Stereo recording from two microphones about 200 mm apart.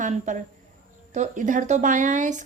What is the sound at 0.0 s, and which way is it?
A woman's voice, 35° right (ahead or behind).